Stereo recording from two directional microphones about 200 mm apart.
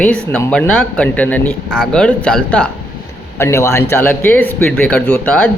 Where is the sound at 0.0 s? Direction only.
5° left (ahead or behind).